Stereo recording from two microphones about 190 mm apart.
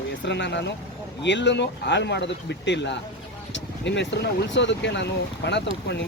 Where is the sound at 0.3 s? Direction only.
65° left (ahead or behind).